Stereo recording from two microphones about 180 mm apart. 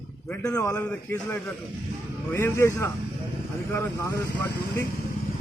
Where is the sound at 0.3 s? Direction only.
15° left (ahead or behind).